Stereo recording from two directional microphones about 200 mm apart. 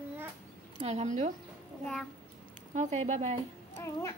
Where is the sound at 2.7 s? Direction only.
35° right (ahead or behind).